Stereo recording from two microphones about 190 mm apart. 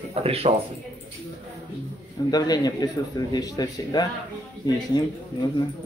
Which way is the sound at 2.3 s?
20° left (ahead or behind).